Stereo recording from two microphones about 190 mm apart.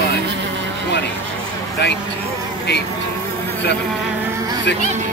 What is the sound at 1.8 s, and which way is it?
Speech, 65° left (ahead or behind).